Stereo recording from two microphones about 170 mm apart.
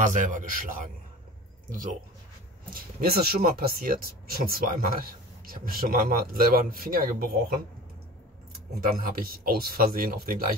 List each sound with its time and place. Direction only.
0.0 s a man's voice: 50° right (ahead or behind)
2.7 s speech: 60° right (ahead or behind)
9.1 s speech: 60° right (ahead or behind)